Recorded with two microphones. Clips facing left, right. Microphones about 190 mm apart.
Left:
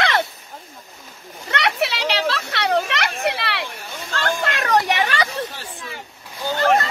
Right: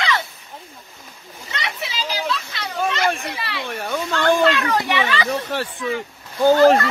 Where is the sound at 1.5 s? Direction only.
70° left (ahead or behind).